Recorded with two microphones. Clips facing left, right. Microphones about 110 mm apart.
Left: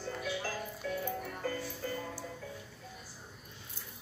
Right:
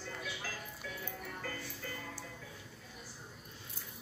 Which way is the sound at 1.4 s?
30° left (ahead or behind).